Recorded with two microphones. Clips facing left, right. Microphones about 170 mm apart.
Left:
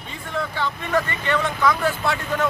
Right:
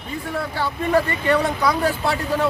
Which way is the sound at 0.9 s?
35° right (ahead or behind).